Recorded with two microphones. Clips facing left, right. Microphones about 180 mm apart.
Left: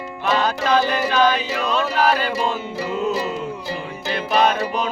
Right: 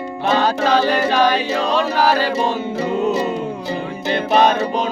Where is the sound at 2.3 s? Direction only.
25° right (ahead or behind).